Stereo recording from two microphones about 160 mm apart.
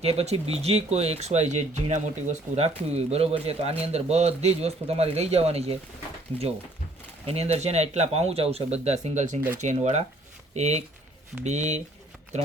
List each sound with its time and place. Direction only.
0.0 s speech: 40° right (ahead or behind)
7.3 s speech: 40° right (ahead or behind)